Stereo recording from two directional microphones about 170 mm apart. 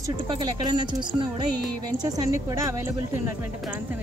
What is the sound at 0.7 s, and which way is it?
Speech, 25° right (ahead or behind).